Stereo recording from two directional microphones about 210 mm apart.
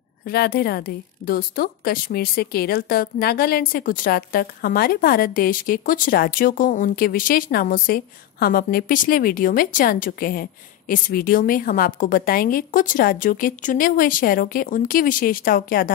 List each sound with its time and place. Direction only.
0.2 s a woman's voice: 50° left (ahead or behind)